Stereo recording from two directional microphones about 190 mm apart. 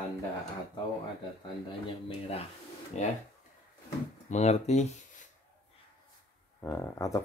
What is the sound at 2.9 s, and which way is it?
Speech, 35° left (ahead or behind).